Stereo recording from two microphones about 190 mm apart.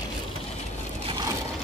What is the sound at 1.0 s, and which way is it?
Crushing, 25° right (ahead or behind).